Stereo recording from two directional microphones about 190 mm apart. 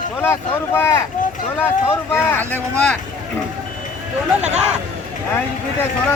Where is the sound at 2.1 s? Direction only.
10° left (ahead or behind).